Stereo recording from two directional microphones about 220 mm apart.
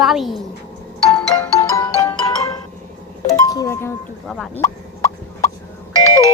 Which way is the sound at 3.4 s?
15° left (ahead or behind).